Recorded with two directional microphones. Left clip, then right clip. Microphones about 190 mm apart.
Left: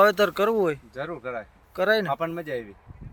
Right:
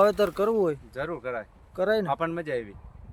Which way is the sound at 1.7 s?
5° right (ahead or behind).